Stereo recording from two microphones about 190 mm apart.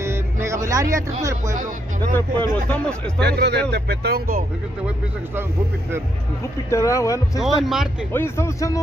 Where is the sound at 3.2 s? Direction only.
60° right (ahead or behind).